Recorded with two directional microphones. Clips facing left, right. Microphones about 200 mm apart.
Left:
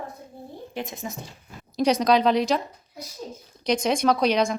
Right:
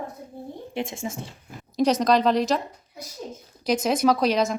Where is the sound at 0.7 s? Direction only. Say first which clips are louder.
Right 3 dB; 25° right (ahead or behind).